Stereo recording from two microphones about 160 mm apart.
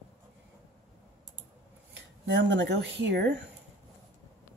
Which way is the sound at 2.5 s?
90° right.